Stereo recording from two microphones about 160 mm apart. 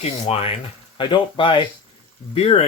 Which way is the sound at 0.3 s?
35° left (ahead or behind).